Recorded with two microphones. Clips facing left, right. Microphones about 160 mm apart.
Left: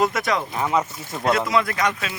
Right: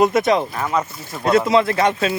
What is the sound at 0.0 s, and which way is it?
Speech, 20° right (ahead or behind).